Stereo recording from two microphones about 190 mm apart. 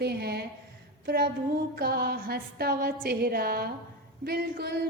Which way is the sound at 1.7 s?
55° right (ahead or behind).